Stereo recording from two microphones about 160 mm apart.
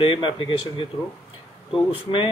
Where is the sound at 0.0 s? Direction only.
35° left (ahead or behind).